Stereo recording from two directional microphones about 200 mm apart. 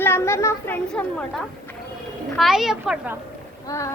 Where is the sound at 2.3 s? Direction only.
Centre (ahead or behind).